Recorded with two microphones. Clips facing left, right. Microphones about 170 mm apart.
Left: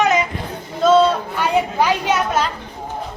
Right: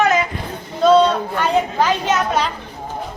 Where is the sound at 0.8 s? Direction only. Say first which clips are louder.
Right 1 dB; centre (ahead or behind).